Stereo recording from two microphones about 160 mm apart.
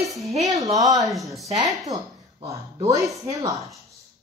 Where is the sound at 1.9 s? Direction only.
20° right (ahead or behind).